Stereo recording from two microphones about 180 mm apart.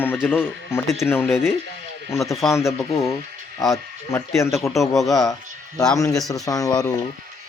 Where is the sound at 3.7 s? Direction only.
15° left (ahead or behind).